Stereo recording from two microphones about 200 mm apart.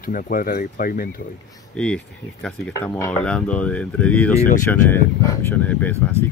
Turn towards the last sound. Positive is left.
turn(degrees=10)  # may be behind; listen again after turning